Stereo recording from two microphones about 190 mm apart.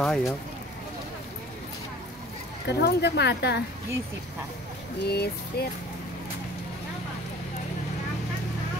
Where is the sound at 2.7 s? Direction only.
60° left (ahead or behind).